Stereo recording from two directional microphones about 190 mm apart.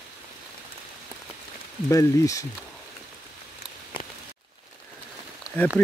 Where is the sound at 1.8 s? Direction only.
15° left (ahead or behind).